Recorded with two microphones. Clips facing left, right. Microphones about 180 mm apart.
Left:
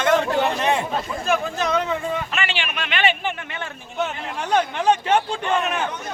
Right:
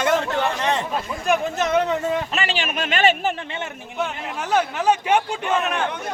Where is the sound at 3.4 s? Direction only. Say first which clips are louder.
Right 2 dB; 25° right (ahead or behind).